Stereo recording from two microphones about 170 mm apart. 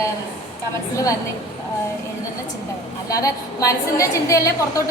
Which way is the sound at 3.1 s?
20° left (ahead or behind).